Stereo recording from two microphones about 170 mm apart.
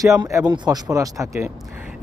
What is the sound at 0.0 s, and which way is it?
Speech, 20° right (ahead or behind).